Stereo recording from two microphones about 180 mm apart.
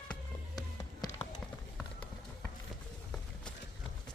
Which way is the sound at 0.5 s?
20° left (ahead or behind).